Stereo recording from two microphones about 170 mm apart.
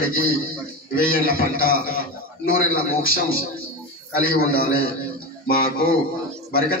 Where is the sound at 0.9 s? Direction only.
60° left (ahead or behind).